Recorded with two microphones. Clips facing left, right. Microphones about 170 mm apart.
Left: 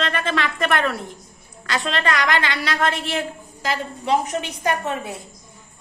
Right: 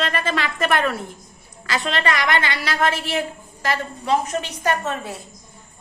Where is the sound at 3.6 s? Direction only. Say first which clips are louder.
Right 1 dB; 15° left (ahead or behind).